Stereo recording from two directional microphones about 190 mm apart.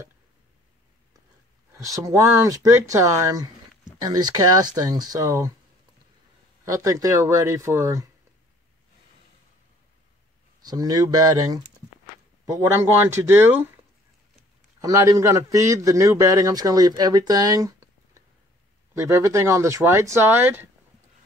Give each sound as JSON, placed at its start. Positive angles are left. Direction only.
{"t": 1.8, "sound": "a man's voice", "side_deg": -15}
{"t": 6.6, "sound": "a man's voice", "side_deg": -15}
{"t": 10.6, "sound": "a man's voice", "side_deg": -20}
{"t": 14.8, "sound": "a man's voice", "side_deg": -20}